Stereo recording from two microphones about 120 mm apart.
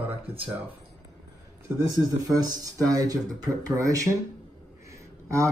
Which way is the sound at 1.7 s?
30° right (ahead or behind).